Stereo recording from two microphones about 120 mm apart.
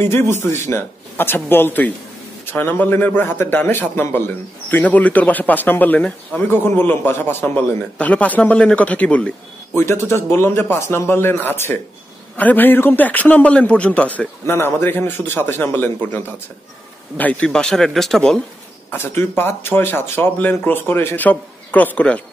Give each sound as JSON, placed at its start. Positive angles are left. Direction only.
{"t": 0.0, "sound": "a man's voice", "side_deg": 20}
{"t": 10.3, "sound": "a man's voice", "side_deg": 20}
{"t": 17.2, "sound": "speech", "side_deg": 10}
{"t": 18.9, "sound": "a man's voice", "side_deg": 20}